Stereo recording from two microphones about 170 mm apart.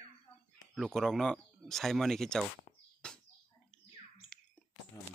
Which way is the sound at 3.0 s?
5° left (ahead or behind).